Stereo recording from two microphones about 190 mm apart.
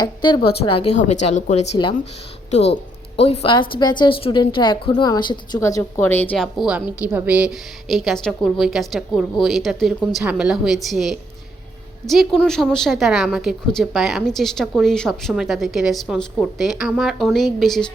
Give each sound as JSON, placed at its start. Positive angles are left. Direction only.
{"t": 0.0, "sound": "a woman's voice", "side_deg": 25}
{"t": 3.2, "sound": "a woman's voice", "side_deg": 30}